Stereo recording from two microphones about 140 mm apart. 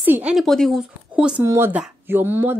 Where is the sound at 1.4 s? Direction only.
20° right (ahead or behind).